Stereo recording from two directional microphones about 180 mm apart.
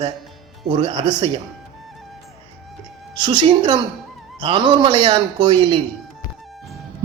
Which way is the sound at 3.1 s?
25° right (ahead or behind).